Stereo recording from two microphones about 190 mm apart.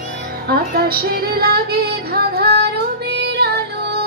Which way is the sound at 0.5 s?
55° right (ahead or behind).